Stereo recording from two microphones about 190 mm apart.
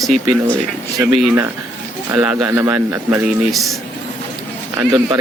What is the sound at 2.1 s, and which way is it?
Speech, 5° right (ahead or behind).